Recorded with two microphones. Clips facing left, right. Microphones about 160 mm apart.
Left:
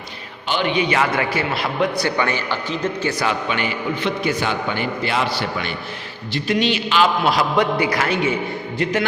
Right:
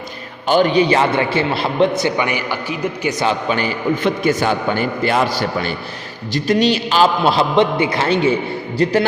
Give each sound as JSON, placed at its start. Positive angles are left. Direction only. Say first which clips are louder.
{"t": 0.4, "sound": "a man's voice", "louder": "right 7 dB", "side_deg": -45}
{"t": 3.2, "sound": "a man's voice", "louder": "right 4 dB", "side_deg": -35}